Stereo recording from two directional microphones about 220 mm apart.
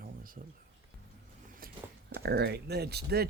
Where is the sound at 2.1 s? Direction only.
50° right (ahead or behind).